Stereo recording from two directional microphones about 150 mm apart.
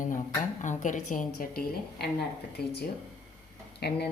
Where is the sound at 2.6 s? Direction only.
90° left.